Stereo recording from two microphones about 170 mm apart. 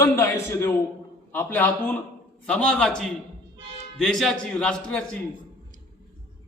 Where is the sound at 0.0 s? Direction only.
15° left (ahead or behind).